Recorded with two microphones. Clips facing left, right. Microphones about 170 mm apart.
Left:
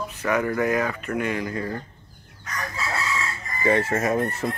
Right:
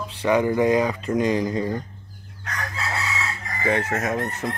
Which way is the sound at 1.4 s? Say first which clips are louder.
Right 4 dB; 20° right (ahead or behind).